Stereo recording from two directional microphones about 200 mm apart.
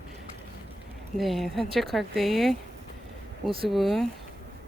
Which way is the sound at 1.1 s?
Centre (ahead or behind).